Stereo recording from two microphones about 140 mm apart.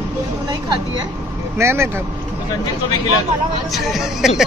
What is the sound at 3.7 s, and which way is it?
Speech, centre (ahead or behind).